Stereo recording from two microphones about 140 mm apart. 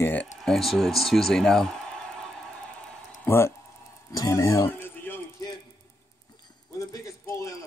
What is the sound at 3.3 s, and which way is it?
Speech, 20° left (ahead or behind).